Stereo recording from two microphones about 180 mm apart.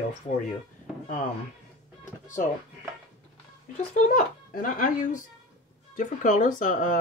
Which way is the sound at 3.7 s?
45° left (ahead or behind).